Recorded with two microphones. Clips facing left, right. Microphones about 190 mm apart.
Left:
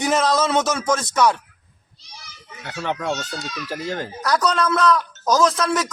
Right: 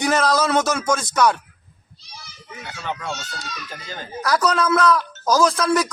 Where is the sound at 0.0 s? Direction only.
Centre (ahead or behind).